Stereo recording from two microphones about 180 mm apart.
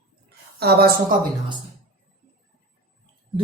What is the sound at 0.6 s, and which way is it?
Speech, 60° right (ahead or behind).